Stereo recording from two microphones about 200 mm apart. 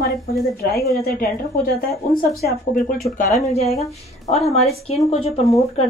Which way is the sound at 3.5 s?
30° left (ahead or behind).